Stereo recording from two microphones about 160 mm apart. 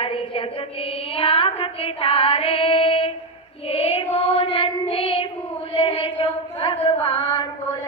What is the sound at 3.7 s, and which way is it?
Child singing, 35° left (ahead or behind).